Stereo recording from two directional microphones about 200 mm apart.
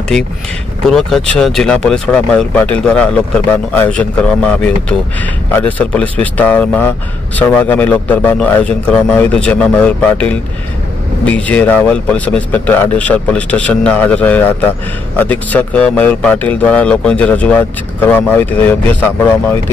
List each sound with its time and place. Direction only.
0.8 s a man's voice: centre (ahead or behind)